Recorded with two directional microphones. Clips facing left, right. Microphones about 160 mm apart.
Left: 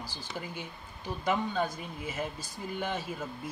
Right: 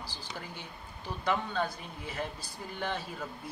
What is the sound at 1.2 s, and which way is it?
Speech, 10° left (ahead or behind).